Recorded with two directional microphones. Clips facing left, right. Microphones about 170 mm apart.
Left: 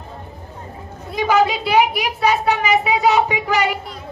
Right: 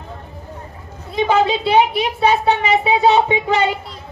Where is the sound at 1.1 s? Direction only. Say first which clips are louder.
Right 1 dB; 25° right (ahead or behind).